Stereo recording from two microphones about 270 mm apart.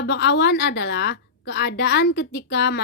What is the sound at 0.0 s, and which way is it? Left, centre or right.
A woman's voice, left.